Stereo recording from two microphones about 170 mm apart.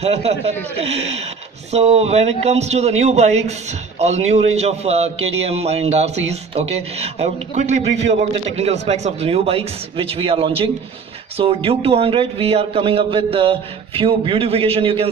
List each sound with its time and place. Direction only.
0.0 s a man's voice: 35° right (ahead or behind)